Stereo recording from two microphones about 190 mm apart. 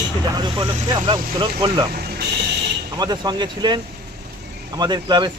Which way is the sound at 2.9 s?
20° right (ahead or behind).